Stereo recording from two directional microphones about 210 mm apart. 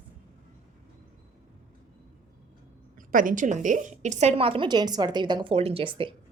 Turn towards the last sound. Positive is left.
turn(degrees=-25)  # may be behind; listen again after turning